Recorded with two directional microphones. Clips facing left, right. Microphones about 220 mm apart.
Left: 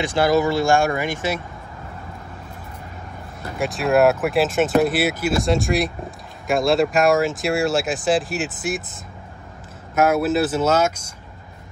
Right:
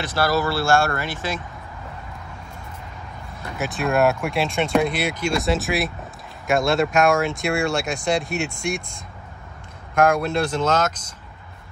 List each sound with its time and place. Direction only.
0.0 s speech: 15° left (ahead or behind)
3.5 s speech: centre (ahead or behind)